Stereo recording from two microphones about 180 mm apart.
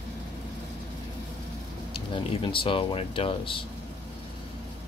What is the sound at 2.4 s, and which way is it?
Speech, 30° left (ahead or behind).